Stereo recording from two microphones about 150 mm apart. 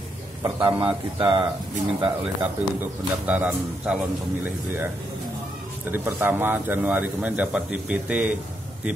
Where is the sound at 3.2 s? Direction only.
10° right (ahead or behind).